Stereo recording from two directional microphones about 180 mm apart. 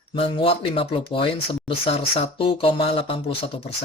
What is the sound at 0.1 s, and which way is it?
Speech, 30° left (ahead or behind).